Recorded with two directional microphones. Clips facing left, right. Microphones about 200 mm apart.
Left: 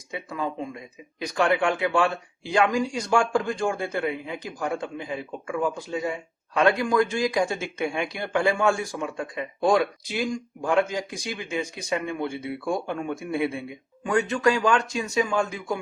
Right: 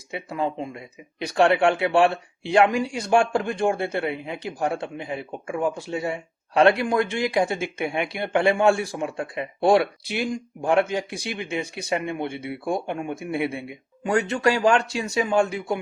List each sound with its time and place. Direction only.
0.1 s speech: 25° right (ahead or behind)